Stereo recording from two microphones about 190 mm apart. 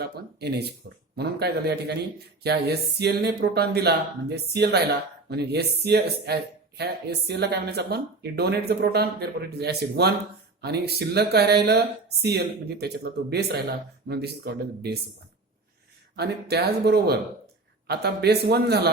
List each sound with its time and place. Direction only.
0.0 s a man's voice: 55° right (ahead or behind)
16.1 s a man's voice: 60° right (ahead or behind)